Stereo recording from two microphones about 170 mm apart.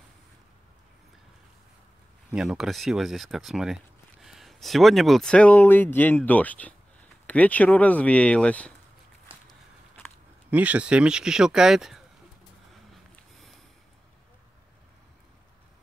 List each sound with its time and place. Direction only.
2.3 s speech: centre (ahead or behind)
9.3 s walk: 30° right (ahead or behind)
10.5 s speech: 10° right (ahead or behind)
13.1 s sniff: centre (ahead or behind)